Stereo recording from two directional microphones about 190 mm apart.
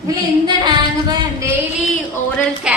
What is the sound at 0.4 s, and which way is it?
Female singing, 20° right (ahead or behind).